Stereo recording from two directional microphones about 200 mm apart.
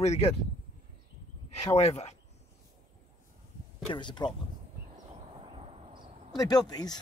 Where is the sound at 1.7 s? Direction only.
35° left (ahead or behind).